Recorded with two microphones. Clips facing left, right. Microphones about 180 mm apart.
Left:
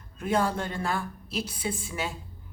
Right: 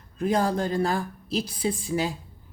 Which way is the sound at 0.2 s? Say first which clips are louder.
Right 3 dB; 35° right (ahead or behind).